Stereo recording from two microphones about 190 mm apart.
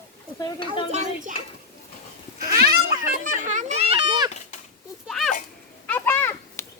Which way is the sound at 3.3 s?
40° right (ahead or behind).